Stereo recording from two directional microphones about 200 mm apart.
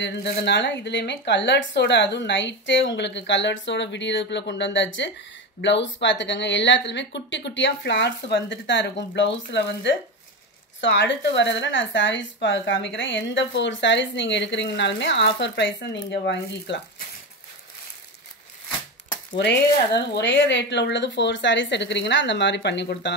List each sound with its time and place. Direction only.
0.0 s speech: 60° left (ahead or behind)
19.3 s speech: 60° left (ahead or behind)